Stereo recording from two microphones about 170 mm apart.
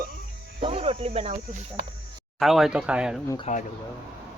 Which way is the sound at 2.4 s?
Centre (ahead or behind).